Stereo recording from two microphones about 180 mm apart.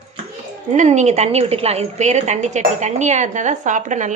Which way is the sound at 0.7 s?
40° right (ahead or behind).